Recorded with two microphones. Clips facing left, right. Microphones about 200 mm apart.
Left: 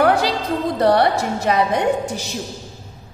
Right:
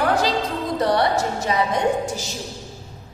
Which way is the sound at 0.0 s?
60° left (ahead or behind).